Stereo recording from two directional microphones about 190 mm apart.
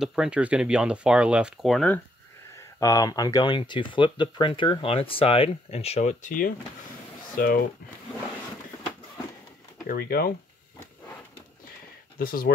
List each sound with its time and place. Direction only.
0.0 s speech: 5° right (ahead or behind)
2.6 s speech: 15° left (ahead or behind); by 7.6 s 50° left (ahead or behind)
9.8 s speech: 50° left (ahead or behind)
12.2 s speech: 50° left (ahead or behind)